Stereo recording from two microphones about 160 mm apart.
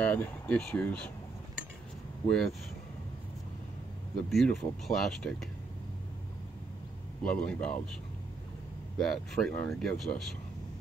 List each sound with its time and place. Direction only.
0.0 s speech: 10° left (ahead or behind)
2.2 s speech: 5° left (ahead or behind)
4.3 s speech: centre (ahead or behind)
7.2 s speech: 5° left (ahead or behind)
8.9 s speech: 5° left (ahead or behind)